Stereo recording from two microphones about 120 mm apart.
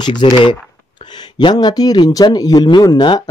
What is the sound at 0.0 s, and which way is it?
Speech, 40° left (ahead or behind).